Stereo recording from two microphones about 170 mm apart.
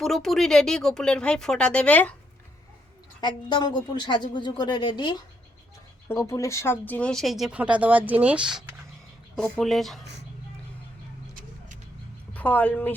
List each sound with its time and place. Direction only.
0.0 s speech: centre (ahead or behind)
3.2 s speech: 25° left (ahead or behind); by 10.0 s centre (ahead or behind)
12.3 s a woman's voice: 10° left (ahead or behind)